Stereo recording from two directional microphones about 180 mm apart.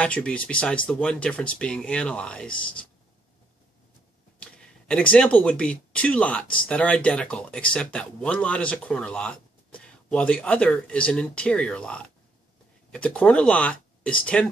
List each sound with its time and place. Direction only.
0.0 s speech: 5° left (ahead or behind)
4.4 s speech: 5° left (ahead or behind)